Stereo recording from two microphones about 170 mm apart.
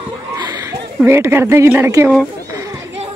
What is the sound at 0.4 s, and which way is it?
Speech, 20° right (ahead or behind).